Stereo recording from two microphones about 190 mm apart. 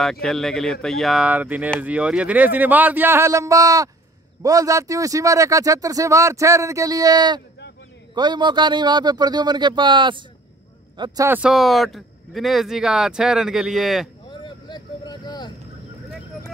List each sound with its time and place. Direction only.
0.0 s a man's voice: centre (ahead or behind)
14.3 s vehicle: 25° left (ahead or behind)